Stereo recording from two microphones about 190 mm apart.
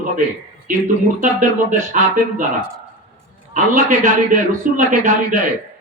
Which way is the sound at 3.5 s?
40° right (ahead or behind).